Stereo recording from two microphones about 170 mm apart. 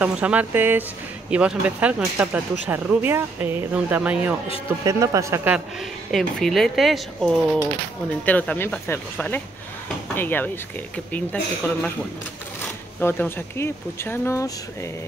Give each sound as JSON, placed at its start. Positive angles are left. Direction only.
{"t": 0.0, "sound": "speech", "side_deg": -10}
{"t": 4.8, "sound": "speech", "side_deg": -20}
{"t": 6.1, "sound": "speech", "side_deg": 0}
{"t": 8.3, "sound": "speech", "side_deg": 10}
{"t": 13.0, "sound": "speech", "side_deg": 15}